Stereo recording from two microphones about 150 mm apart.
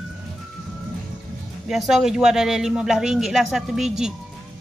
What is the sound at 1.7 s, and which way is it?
Speech, centre (ahead or behind).